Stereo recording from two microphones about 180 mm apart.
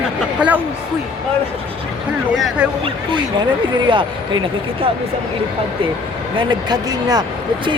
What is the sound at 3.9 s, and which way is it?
Speech, 25° right (ahead or behind).